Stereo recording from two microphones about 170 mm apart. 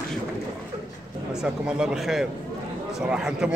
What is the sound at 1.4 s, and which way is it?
A man's voice, 5° right (ahead or behind).